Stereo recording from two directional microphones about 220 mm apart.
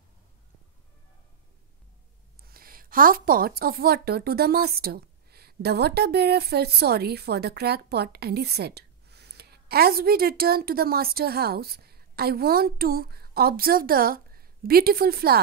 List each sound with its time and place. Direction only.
2.4 s a woman's voice: 40° right (ahead or behind)